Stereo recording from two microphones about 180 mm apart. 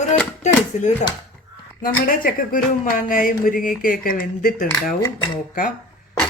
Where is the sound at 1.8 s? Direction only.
50° left (ahead or behind).